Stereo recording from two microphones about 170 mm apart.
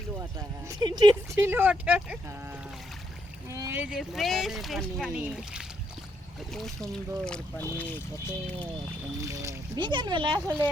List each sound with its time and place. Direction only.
0.2 s speech: 20° right (ahead or behind)
3.5 s speech: 15° right (ahead or behind)
3.8 s speech: centre (ahead or behind)
9.2 s speech: 20° right (ahead or behind)